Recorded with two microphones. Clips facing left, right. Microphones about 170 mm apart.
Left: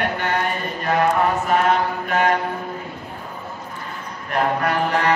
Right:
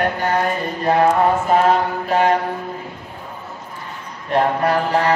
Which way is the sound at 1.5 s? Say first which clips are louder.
Right 3 dB; 30° right (ahead or behind).